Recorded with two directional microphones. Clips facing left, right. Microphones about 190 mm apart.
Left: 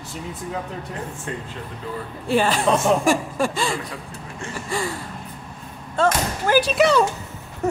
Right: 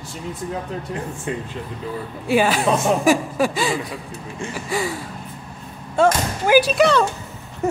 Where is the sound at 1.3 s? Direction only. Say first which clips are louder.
Right 4 dB; 15° right (ahead or behind).